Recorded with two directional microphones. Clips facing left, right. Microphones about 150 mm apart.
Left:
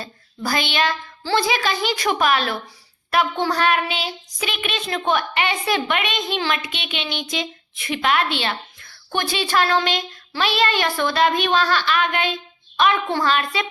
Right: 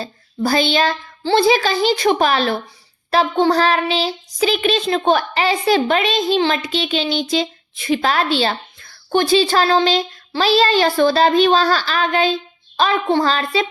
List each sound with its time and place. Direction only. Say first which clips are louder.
0.0 s a woman's voice: right 7 dB; 30° right (ahead or behind)
3.1 s child singing: right 5 dB; 30° right (ahead or behind)